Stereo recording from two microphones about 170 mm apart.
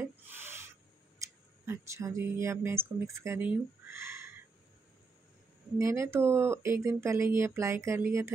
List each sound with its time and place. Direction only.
0.0 s owl: 15° right (ahead or behind)
1.7 s speech: 15° right (ahead or behind)
5.8 s speech: 15° right (ahead or behind)